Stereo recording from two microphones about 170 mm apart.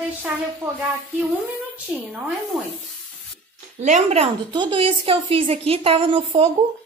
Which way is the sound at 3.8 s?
45° right (ahead or behind).